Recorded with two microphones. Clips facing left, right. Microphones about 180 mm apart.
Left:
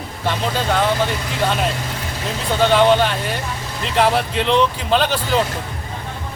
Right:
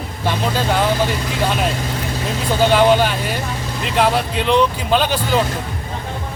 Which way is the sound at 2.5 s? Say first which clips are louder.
Right 1 dB; 5° right (ahead or behind).